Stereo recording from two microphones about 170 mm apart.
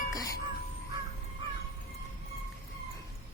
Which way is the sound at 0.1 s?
20° left (ahead or behind).